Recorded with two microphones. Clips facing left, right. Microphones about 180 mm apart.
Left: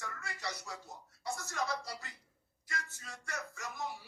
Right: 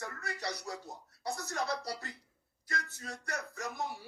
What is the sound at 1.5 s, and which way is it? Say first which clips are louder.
Speech: right 2 dB; 65° right (ahead or behind).